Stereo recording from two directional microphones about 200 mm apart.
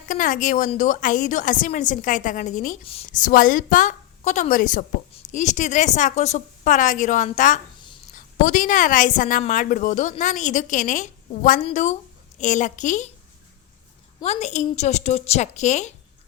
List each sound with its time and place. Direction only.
0.1 s a woman's voice: 40° left (ahead or behind)
2.8 s a woman's voice: 30° left (ahead or behind)
3.1 s a woman's voice: 40° left (ahead or behind)
14.3 s a woman's voice: 35° left (ahead or behind)